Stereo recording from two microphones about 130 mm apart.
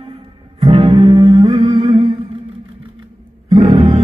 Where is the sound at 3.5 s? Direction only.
45° right (ahead or behind).